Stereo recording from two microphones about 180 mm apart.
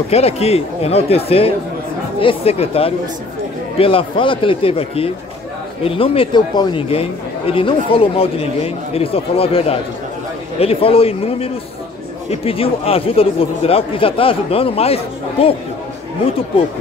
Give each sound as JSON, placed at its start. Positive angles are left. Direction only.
{"t": 0.1, "sound": "a man's voice", "side_deg": 35}
{"t": 16.3, "sound": "a man's voice", "side_deg": 35}